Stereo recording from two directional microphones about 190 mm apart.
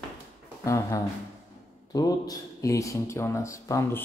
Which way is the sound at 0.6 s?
15° left (ahead or behind).